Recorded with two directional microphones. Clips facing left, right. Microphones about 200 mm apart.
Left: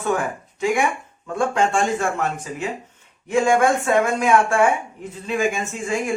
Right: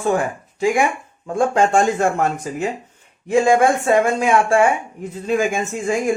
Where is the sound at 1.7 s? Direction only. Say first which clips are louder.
Right 4 dB; 45° right (ahead or behind).